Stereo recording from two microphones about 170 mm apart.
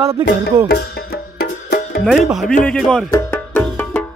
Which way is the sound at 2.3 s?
Centre (ahead or behind).